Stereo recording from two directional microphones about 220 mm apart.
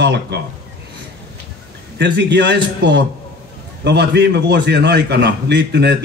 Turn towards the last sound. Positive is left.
turn(degrees=-50)  # may be behind; listen again after turning